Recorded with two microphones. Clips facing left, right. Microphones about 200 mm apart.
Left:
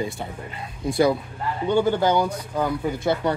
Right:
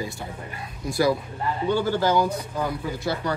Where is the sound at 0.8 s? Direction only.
30° left (ahead or behind).